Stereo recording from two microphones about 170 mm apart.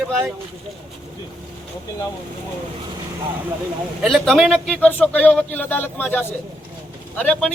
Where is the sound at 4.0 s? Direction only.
Centre (ahead or behind).